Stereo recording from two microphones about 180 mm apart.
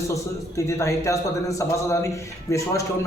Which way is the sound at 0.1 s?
15° left (ahead or behind).